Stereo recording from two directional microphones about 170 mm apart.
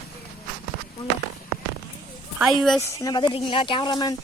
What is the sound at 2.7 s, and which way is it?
Speech, 20° left (ahead or behind).